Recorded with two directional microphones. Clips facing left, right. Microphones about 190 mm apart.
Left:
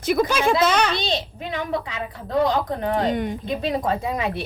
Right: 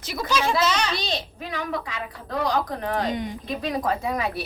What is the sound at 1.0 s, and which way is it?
Speech, 25° left (ahead or behind).